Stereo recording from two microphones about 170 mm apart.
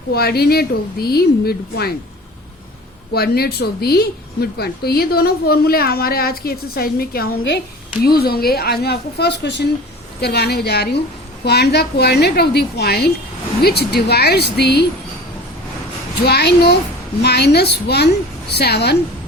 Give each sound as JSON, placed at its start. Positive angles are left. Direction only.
{"t": 0.1, "sound": "speech", "side_deg": 65}
{"t": 3.1, "sound": "speech", "side_deg": 65}
{"t": 16.2, "sound": "speech", "side_deg": 75}